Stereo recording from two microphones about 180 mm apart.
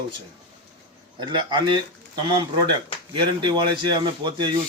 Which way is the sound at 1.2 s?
25° right (ahead or behind).